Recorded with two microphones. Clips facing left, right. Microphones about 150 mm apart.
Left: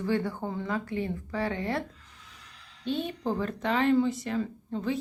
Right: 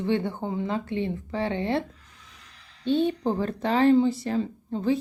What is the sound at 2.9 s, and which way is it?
Speech, 30° right (ahead or behind).